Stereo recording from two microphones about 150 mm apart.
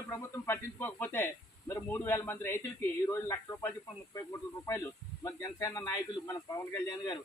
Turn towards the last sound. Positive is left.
turn(degrees=25)  # may be behind; listen again after turning